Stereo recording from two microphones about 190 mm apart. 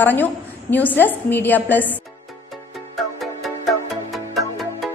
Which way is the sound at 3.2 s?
Centre (ahead or behind).